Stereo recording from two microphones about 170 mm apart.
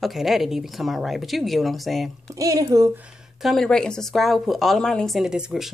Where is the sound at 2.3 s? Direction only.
20° right (ahead or behind).